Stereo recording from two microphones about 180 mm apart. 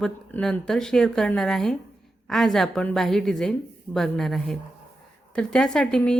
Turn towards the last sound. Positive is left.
turn(degrees=5)  # may be behind; listen again after turning